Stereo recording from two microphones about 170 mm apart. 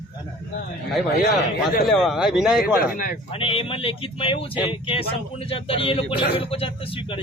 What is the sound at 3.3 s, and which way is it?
Speech, 35° left (ahead or behind).